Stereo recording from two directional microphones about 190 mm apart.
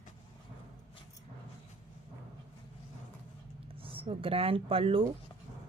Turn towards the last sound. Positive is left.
turn(degrees=-30)  # may be behind; listen again after turning